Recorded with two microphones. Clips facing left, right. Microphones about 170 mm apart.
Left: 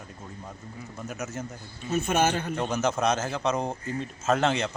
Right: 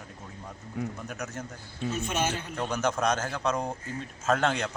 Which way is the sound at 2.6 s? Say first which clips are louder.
Right 1 dB; 5° left (ahead or behind).